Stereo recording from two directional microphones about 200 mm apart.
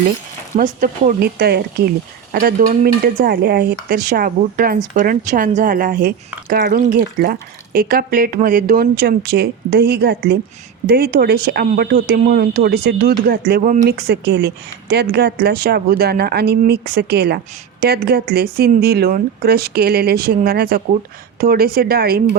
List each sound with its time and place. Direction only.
0.5 s speech: 40° right (ahead or behind)